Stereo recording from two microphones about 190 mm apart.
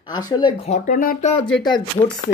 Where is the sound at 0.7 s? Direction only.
45° left (ahead or behind).